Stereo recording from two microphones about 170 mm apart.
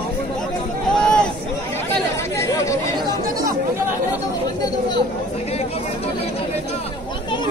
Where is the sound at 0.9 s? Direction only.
5° left (ahead or behind).